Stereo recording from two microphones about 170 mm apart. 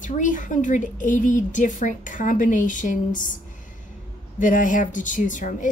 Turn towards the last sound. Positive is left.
turn(degrees=50)  # may be behind; listen again after turning